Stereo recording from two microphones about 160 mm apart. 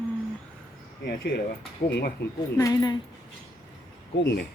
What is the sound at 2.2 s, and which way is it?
Speech, 90° left.